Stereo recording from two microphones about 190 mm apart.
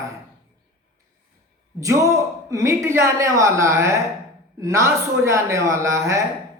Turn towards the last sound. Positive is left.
turn(degrees=-15)  # may be behind; listen again after turning